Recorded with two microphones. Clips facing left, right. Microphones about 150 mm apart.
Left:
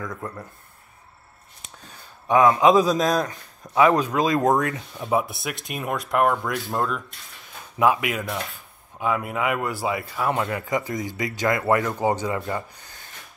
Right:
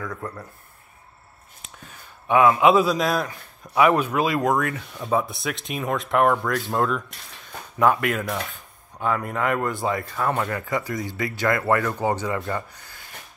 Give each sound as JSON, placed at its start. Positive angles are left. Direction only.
{"t": 0.0, "sound": "speech", "side_deg": 15}
{"t": 2.6, "sound": "a man's voice", "side_deg": 40}
{"t": 3.2, "sound": "speech", "side_deg": 20}
{"t": 4.4, "sound": "speech", "side_deg": 25}
{"t": 5.4, "sound": "speech", "side_deg": 0}